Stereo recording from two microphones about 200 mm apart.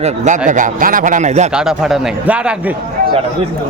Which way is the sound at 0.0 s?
40° right (ahead or behind).